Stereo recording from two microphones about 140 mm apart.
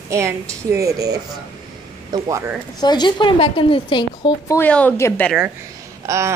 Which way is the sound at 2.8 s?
30° left (ahead or behind).